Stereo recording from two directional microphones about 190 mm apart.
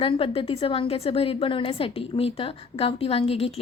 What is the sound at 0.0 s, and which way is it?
A woman's voice, 30° left (ahead or behind).